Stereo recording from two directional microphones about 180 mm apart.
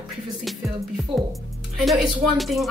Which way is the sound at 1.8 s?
Centre (ahead or behind).